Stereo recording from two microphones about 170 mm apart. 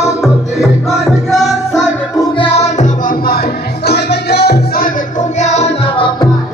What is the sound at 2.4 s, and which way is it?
Music, 40° left (ahead or behind).